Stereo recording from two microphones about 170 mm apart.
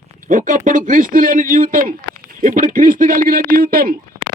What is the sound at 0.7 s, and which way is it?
Speech, 50° right (ahead or behind).